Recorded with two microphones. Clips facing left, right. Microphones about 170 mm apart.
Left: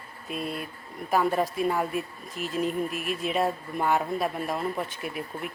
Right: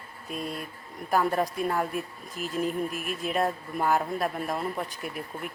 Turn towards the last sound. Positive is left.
turn(degrees=0)  # may be behind; listen again after turning